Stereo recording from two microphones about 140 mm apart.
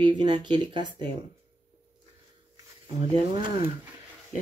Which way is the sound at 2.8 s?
35° right (ahead or behind).